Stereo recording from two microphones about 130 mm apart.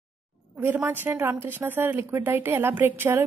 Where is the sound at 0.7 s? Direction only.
15° right (ahead or behind).